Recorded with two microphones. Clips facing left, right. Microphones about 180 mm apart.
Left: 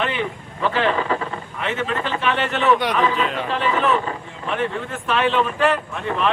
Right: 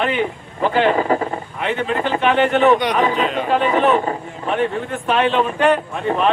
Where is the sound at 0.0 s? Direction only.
40° right (ahead or behind).